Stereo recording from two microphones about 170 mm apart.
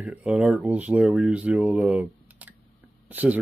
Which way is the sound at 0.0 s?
5° right (ahead or behind).